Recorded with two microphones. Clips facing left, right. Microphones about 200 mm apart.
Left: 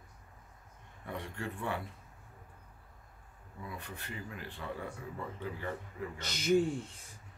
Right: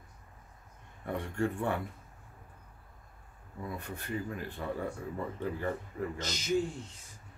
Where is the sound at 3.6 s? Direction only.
45° right (ahead or behind).